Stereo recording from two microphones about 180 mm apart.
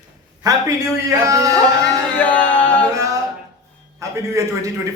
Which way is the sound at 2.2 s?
5° left (ahead or behind).